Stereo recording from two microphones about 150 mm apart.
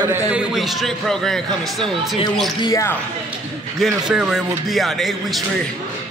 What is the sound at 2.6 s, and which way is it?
Speech, 25° left (ahead or behind).